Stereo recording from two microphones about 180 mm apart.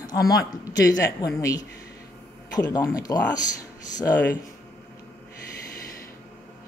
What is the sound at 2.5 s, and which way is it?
Speech, 20° left (ahead or behind).